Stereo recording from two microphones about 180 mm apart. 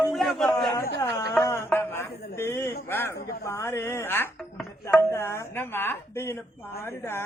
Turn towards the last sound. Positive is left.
turn(degrees=15)  # may be behind; listen again after turning